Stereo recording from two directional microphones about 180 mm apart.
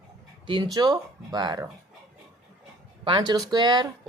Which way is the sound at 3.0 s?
25° right (ahead or behind).